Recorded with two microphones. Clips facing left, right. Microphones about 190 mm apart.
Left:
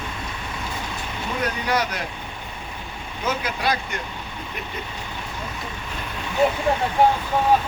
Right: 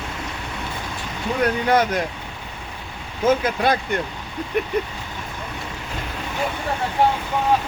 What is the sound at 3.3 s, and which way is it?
Speech, 50° right (ahead or behind).